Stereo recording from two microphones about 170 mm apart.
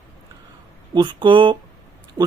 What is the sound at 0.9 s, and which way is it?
Speech, 30° right (ahead or behind).